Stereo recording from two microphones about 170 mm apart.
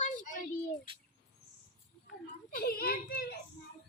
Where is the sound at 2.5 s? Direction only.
60° left (ahead or behind).